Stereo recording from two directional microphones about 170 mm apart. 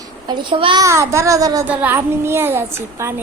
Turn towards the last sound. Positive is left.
turn(degrees=-15)  # may be behind; listen again after turning